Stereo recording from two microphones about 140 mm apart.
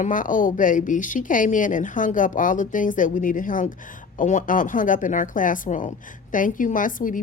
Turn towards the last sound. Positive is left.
turn(degrees=70)  # may be behind; listen again after turning